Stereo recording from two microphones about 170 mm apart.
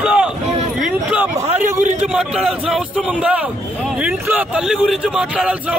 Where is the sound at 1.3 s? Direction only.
45° right (ahead or behind).